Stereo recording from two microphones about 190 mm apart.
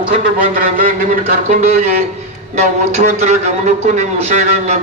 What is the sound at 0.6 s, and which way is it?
A man's voice, 50° right (ahead or behind).